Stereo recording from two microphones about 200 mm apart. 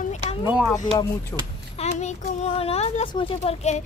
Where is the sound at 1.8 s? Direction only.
35° left (ahead or behind).